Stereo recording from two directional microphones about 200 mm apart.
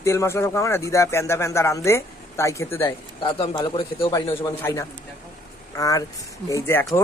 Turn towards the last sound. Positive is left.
turn(degrees=10)  # may be behind; listen again after turning